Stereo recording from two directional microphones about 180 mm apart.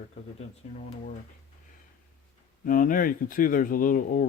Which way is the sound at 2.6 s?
50° left (ahead or behind).